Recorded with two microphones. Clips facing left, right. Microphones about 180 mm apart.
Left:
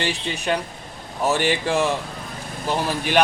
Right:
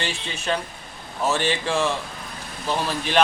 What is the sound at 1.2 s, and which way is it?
Speech, 15° left (ahead or behind).